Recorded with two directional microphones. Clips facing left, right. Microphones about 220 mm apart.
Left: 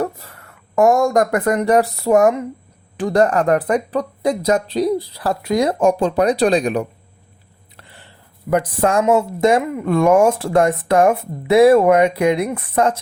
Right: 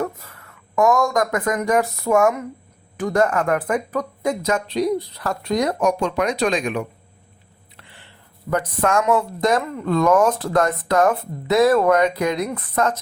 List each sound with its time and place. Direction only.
0.0 s speech: 35° left (ahead or behind)
7.8 s a sound: 40° left (ahead or behind)
8.4 s speech: 30° left (ahead or behind)